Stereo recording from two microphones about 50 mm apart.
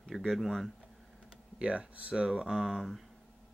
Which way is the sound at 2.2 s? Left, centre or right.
Centre.